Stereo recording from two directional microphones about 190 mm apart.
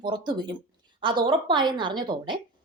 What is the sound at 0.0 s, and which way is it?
A woman's voice, 25° right (ahead or behind).